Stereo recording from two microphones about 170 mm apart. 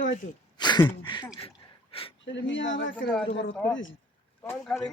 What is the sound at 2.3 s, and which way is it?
Speech, 90° left.